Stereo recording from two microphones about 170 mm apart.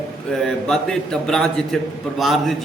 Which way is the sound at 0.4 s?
5° left (ahead or behind).